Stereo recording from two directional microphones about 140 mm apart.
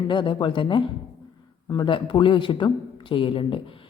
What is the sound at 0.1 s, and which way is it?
A man's voice, 35° left (ahead or behind).